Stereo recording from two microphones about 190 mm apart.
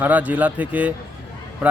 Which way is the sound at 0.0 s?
10° right (ahead or behind).